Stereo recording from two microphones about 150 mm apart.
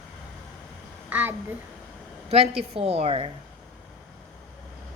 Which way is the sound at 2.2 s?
45° right (ahead or behind).